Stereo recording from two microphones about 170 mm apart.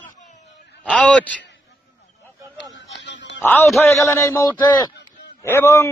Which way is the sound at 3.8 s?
15° left (ahead or behind).